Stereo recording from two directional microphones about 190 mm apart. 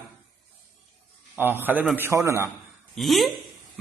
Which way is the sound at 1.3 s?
10° right (ahead or behind).